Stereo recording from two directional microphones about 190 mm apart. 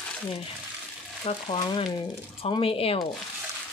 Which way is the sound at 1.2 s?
25° left (ahead or behind).